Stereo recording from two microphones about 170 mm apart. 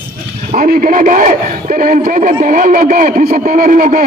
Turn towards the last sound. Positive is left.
turn(degrees=-50)  # may be behind; listen again after turning